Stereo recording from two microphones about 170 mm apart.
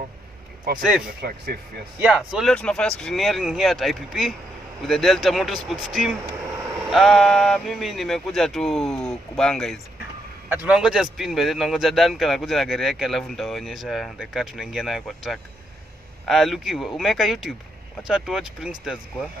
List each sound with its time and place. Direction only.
1.2 s speech: 65° right (ahead or behind)
2.0 s a man's voice: 5° right (ahead or behind)
6.9 s a man's voice: centre (ahead or behind)